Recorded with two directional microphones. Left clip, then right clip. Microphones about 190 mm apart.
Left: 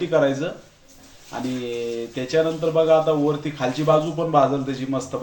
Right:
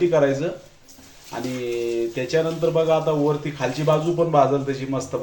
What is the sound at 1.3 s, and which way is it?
A man's voice, centre (ahead or behind).